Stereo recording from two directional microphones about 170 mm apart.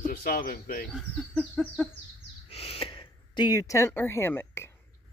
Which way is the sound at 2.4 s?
35° left (ahead or behind).